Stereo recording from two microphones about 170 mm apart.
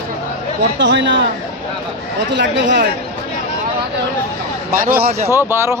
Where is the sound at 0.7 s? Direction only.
90° right.